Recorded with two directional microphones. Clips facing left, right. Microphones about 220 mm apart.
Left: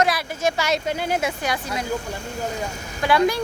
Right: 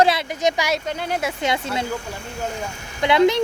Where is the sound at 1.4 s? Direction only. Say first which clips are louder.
Right 3 dB; 25° right (ahead or behind).